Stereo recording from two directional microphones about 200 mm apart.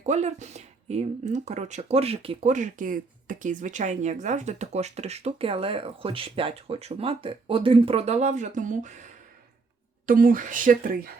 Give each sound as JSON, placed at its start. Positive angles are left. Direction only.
{"t": 0.0, "sound": "speech", "side_deg": -35}
{"t": 10.1, "sound": "speech", "side_deg": -45}